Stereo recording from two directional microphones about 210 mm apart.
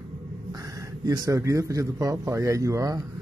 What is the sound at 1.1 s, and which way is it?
A man's voice, 15° right (ahead or behind).